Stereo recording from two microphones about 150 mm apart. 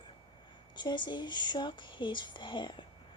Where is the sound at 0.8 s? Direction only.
30° left (ahead or behind).